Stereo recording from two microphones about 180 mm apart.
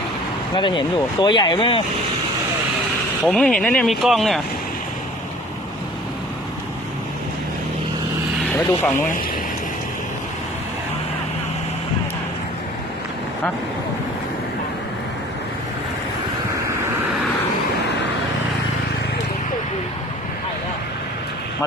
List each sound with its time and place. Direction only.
0.5 s speech: 25° left (ahead or behind)
3.2 s speech: 5° left (ahead or behind)
8.5 s speech: 15° left (ahead or behind)